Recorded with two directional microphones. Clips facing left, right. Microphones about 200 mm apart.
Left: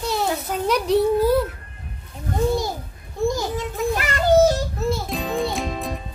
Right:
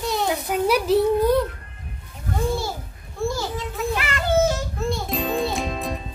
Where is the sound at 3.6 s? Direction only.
40° left (ahead or behind).